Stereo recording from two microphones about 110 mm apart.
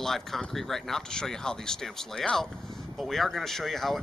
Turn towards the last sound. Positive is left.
turn(degrees=0)  # may be behind; listen again after turning